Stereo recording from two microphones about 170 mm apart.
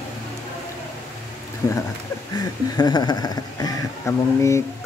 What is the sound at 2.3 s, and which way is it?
Speech, 25° left (ahead or behind).